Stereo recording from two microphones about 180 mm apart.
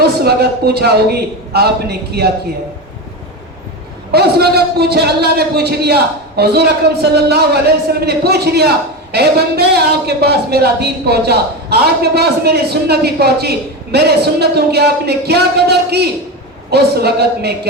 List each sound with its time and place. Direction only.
0.0 s speech: 60° right (ahead or behind)
4.1 s speech: 65° right (ahead or behind)